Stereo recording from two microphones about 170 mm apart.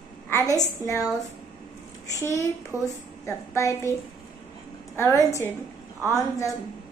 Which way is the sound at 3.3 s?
15° left (ahead or behind).